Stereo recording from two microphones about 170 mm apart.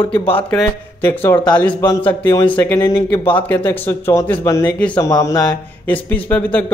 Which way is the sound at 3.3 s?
10° left (ahead or behind).